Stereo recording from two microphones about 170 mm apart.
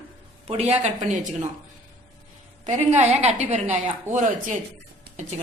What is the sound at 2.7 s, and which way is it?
A woman's voice, 40° right (ahead or behind).